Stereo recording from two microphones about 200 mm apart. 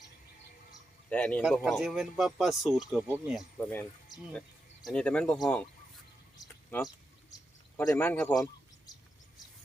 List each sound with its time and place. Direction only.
1.1 s speech: 5° left (ahead or behind)
3.6 s speech: 10° left (ahead or behind)
4.1 s speech: 20° left (ahead or behind)
4.9 s speech: 5° left (ahead or behind)
6.4 s a sound: 10° left (ahead or behind)
7.8 s speech: 10° left (ahead or behind)